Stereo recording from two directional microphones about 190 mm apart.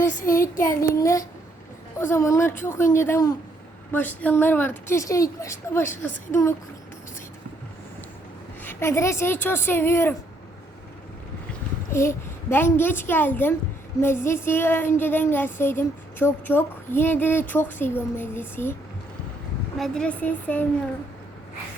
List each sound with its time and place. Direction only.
0.2 s child singing: 45° left (ahead or behind)
0.8 s speech: 15° left (ahead or behind)
8.6 s speech: 15° left (ahead or behind)
11.9 s speech: 15° left (ahead or behind)
19.8 s speech: 5° left (ahead or behind)